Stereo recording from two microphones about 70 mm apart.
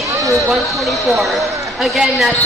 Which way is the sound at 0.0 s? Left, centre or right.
Right.